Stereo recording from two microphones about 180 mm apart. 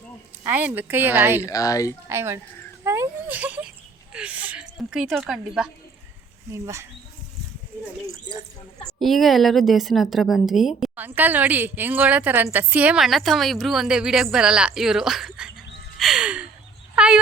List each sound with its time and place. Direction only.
0.4 s a woman's voice: 10° right (ahead or behind)
1.5 s speech: 20° left (ahead or behind)
2.0 s a woman's voice: 15° right (ahead or behind)
2.8 s a sound: 15° right (ahead or behind)
4.1 s speech: 5° right (ahead or behind)
6.5 s a woman's voice: 15° right (ahead or behind)
8.0 s speech: 20° right (ahead or behind)
9.0 s speech: centre (ahead or behind)
16.0 s gasp: 5° right (ahead or behind)
16.9 s a sound: 5° right (ahead or behind)